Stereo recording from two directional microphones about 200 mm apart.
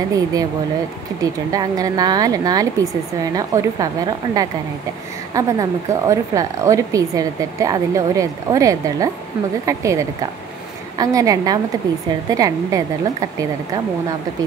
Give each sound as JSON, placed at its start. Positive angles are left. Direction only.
{"t": 0.1, "sound": "speech", "side_deg": -15}